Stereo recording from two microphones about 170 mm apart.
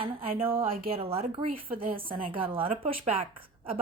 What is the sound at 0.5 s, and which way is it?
Speech, 60° right (ahead or behind).